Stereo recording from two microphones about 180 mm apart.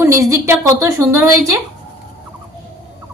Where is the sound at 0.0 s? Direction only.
15° right (ahead or behind).